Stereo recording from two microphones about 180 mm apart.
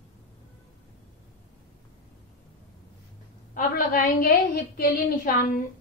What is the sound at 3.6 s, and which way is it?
A woman's voice, 50° left (ahead or behind).